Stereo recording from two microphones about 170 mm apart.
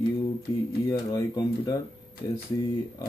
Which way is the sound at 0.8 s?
20° left (ahead or behind).